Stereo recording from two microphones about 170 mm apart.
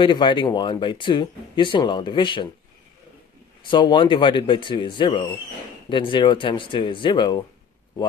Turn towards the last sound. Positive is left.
turn(degrees=25)  # may be behind; listen again after turning